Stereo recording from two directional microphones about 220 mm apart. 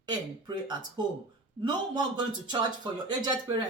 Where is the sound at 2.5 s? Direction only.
20° right (ahead or behind).